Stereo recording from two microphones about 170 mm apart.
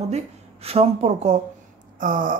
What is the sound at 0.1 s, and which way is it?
A woman's voice, 35° right (ahead or behind).